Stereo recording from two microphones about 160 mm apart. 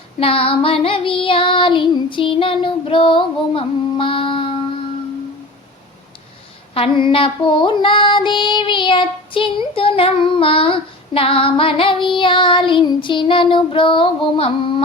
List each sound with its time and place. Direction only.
0.2 s child singing: 35° left (ahead or behind)
6.7 s child singing: 35° left (ahead or behind)